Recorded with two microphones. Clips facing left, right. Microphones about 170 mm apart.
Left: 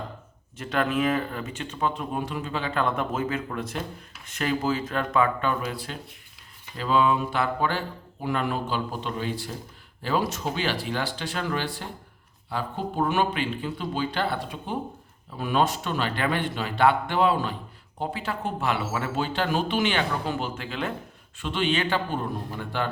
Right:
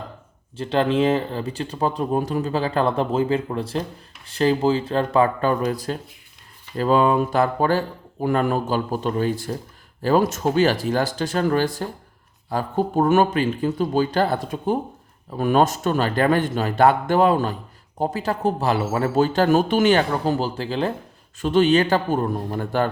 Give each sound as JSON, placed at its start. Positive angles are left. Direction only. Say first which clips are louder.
{"t": 0.5, "sound": "speech", "louder": "right 6 dB", "side_deg": -30}